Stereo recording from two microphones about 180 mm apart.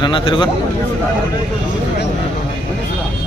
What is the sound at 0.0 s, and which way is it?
Speech, 25° left (ahead or behind).